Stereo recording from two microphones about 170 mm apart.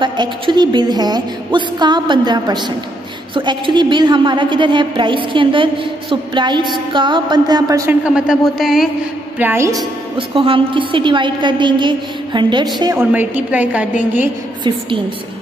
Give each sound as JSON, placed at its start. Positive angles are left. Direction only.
{"t": 0.0, "sound": "a woman's voice", "side_deg": -25}
{"t": 8.0, "sound": "a sound", "side_deg": -5}
{"t": 9.4, "sound": "a woman's voice", "side_deg": -15}
{"t": 10.1, "sound": "a woman's voice", "side_deg": -30}
{"t": 13.0, "sound": "a woman's voice", "side_deg": -10}